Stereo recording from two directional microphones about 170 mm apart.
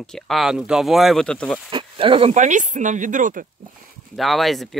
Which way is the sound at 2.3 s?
45° right (ahead or behind).